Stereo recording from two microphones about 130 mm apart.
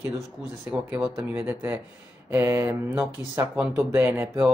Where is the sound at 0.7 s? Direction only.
10° right (ahead or behind).